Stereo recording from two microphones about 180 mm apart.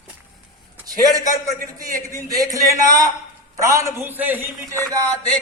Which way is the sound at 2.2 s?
20° right (ahead or behind).